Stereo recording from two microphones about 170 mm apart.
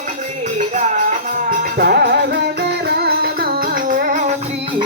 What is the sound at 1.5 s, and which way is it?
Music, 65° right (ahead or behind).